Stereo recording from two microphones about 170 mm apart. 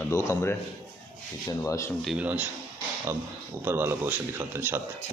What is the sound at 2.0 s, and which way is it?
Speech, 5° right (ahead or behind).